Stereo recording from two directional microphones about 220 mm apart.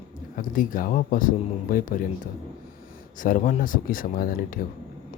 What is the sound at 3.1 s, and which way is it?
Speech, 40° left (ahead or behind).